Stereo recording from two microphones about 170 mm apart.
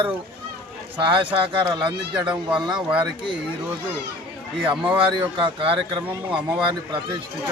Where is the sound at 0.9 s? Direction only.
30° right (ahead or behind).